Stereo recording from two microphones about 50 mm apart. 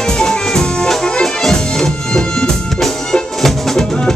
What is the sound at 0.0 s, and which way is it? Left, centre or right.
Music, centre.